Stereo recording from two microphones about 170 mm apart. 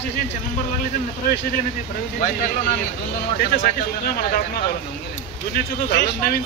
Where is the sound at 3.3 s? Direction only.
55° left (ahead or behind).